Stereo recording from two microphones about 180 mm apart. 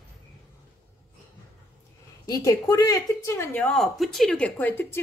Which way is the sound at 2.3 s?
20° left (ahead or behind).